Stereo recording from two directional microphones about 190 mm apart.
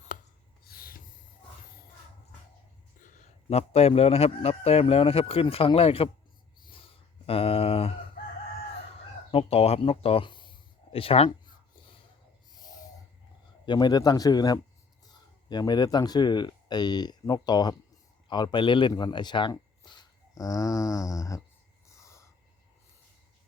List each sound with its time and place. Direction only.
0.6 s snort: 50° left (ahead or behind)
3.0 s a man's voice: 40° left (ahead or behind)
7.3 s a sound: 30° left (ahead or behind)
9.3 s a man's voice: 30° left (ahead or behind)
13.7 s speech: 20° left (ahead or behind)
22.0 s a sound: 15° left (ahead or behind)